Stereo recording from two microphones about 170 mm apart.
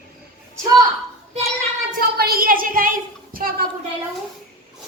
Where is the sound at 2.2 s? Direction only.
60° right (ahead or behind).